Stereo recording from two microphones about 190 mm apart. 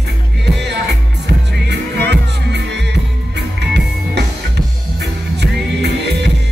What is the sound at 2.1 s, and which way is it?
Music, 65° right (ahead or behind).